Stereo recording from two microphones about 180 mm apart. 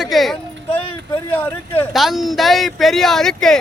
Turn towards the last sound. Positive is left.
turn(degrees=5)  # may be behind; listen again after turning